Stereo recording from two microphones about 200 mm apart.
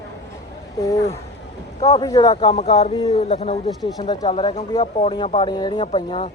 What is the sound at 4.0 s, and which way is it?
Speech, 20° left (ahead or behind).